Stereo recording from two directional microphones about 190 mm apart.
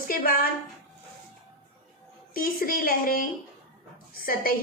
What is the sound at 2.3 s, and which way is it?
Speech, 50° left (ahead or behind).